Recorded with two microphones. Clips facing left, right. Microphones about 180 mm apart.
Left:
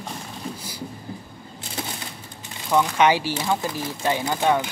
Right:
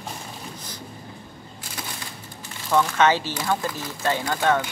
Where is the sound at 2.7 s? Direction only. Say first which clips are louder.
Left 1 dB; 15° left (ahead or behind).